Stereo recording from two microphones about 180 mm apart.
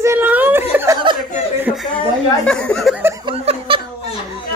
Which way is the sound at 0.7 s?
15° right (ahead or behind).